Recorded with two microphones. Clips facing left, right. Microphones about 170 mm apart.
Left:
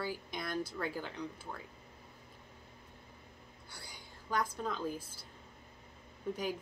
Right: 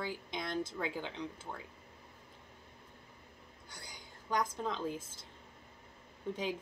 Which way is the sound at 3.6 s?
15° right (ahead or behind).